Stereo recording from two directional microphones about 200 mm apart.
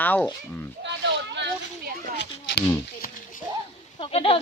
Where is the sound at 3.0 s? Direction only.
45° left (ahead or behind).